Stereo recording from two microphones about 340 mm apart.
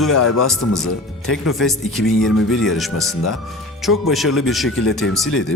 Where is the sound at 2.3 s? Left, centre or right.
Left.